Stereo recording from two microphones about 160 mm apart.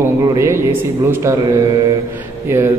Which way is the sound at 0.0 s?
15° right (ahead or behind).